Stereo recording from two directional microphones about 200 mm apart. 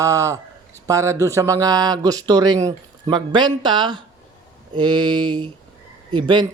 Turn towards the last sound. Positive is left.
turn(degrees=-20)  # may be behind; listen again after turning